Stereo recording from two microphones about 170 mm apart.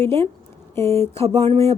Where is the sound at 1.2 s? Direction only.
35° right (ahead or behind).